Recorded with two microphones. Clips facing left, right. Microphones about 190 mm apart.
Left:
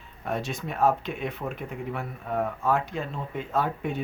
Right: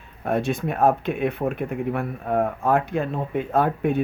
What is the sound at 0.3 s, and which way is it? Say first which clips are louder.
Speech: right 7 dB; 55° right (ahead or behind).